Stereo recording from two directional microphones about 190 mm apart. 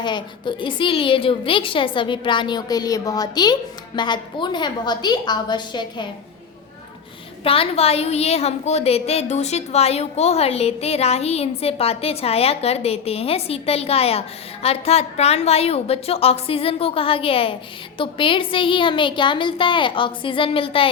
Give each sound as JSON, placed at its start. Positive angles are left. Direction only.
{"t": 0.0, "sound": "a woman's voice", "side_deg": 25}
{"t": 7.4, "sound": "a woman's voice", "side_deg": 30}